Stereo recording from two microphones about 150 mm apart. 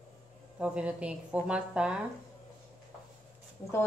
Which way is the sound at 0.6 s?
5° right (ahead or behind).